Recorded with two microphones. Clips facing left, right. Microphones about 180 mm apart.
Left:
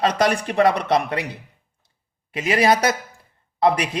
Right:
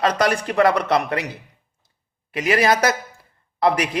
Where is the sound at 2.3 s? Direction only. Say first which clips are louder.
Even; 25° left (ahead or behind).